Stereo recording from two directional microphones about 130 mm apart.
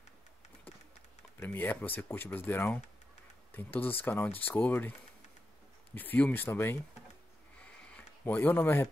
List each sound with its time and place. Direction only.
1.4 s speech: 15° left (ahead or behind)
5.9 s speech: 15° left (ahead or behind)
7.9 s speech: 15° left (ahead or behind)